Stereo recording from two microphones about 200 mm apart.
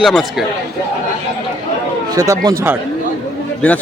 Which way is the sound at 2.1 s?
15° right (ahead or behind).